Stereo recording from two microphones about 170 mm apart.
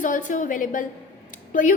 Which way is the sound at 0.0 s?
50° left (ahead or behind).